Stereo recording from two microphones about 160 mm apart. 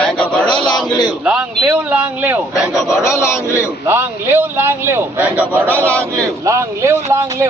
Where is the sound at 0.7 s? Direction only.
25° left (ahead or behind).